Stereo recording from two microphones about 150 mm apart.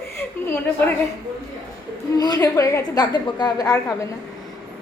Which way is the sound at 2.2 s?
25° left (ahead or behind).